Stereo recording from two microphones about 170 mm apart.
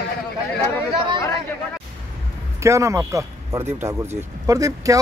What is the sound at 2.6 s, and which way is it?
Speech, 15° right (ahead or behind).